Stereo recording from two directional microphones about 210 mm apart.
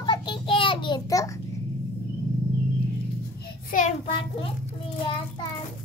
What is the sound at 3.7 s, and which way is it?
Child singing, 30° left (ahead or behind).